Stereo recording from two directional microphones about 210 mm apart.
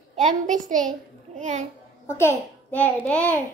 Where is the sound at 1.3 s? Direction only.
35° right (ahead or behind).